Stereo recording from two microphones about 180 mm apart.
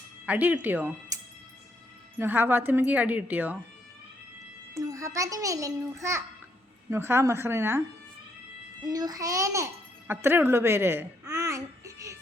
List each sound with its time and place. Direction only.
0.3 s a child's voice: 10° right (ahead or behind)
2.1 s a child's voice: 10° right (ahead or behind)
4.7 s a child's voice: 20° right (ahead or behind)
8.8 s a child's voice: 20° right (ahead or behind)
10.1 s babbling: 10° right (ahead or behind)